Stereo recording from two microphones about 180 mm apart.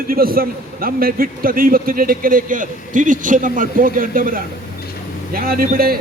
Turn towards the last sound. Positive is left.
turn(degrees=-55)  # may be behind; listen again after turning